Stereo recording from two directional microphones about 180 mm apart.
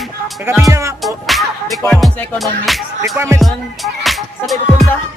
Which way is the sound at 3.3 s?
Centre (ahead or behind).